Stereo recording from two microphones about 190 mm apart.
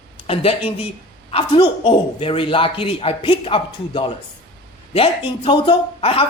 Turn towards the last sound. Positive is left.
turn(degrees=30)  # may be behind; listen again after turning